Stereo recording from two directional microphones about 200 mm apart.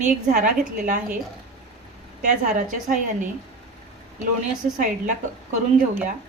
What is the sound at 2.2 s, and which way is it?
A woman's voice, 40° right (ahead or behind).